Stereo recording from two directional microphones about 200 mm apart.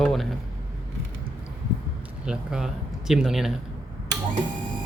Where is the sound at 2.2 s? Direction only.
5° right (ahead or behind).